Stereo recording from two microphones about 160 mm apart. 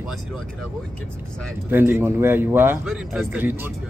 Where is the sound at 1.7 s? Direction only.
15° right (ahead or behind).